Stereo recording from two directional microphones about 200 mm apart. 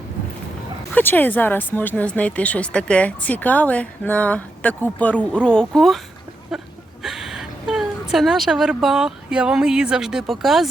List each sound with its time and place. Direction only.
0.9 s speech: 10° left (ahead or behind)
6.5 s a sound: centre (ahead or behind)
7.0 s speech: centre (ahead or behind)